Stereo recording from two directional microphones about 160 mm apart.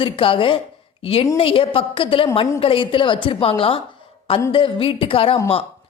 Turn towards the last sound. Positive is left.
turn(degrees=35)  # may be behind; listen again after turning